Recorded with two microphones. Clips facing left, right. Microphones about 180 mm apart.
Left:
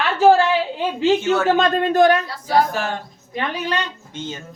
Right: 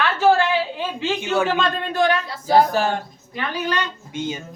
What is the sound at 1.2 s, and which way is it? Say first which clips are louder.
Speech: left 2 dB; 15° right (ahead or behind).